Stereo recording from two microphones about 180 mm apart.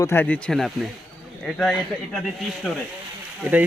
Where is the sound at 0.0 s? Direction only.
10° left (ahead or behind).